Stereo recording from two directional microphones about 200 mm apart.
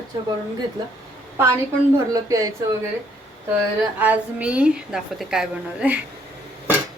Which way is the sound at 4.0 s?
10° right (ahead or behind).